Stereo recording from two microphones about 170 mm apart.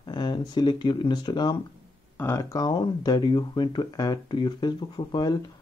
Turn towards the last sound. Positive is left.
turn(degrees=25)  # may be behind; listen again after turning